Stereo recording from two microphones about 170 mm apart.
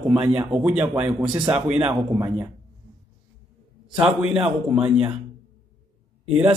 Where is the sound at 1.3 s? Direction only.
25° right (ahead or behind).